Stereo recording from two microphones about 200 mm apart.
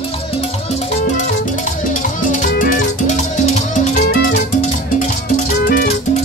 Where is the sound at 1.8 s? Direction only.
45° left (ahead or behind).